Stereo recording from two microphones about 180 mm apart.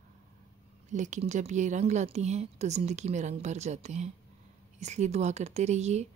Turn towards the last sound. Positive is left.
turn(degrees=-40)  # may be behind; listen again after turning